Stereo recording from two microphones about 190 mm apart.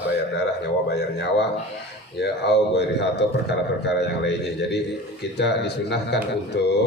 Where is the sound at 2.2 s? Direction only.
60° left (ahead or behind).